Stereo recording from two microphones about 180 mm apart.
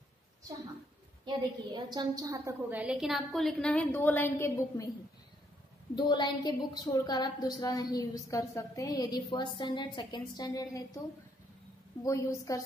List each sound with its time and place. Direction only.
1.2 s a woman's voice: 25° right (ahead or behind); by 4.9 s 15° left (ahead or behind)
5.9 s a woman's voice: 25° left (ahead or behind)
12.0 s a woman's voice: 15° left (ahead or behind)